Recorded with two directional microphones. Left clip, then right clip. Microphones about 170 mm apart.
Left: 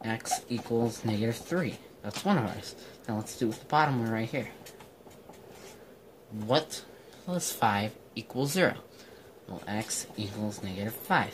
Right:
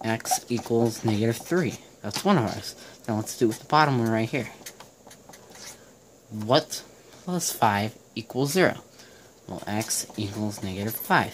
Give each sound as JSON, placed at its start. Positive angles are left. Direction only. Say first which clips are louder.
{"t": 0.0, "sound": "speech", "louder": "right 6 dB", "side_deg": -50}
{"t": 6.4, "sound": "speech", "louder": "right 5 dB", "side_deg": -45}